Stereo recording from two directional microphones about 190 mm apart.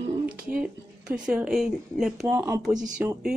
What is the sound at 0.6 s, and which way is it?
Speech, 5° right (ahead or behind).